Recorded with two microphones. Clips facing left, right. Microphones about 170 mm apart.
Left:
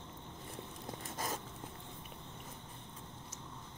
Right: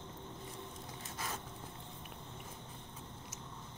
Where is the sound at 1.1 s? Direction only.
40° left (ahead or behind).